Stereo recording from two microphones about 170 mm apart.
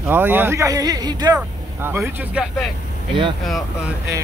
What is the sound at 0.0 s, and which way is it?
Speech, 10° right (ahead or behind).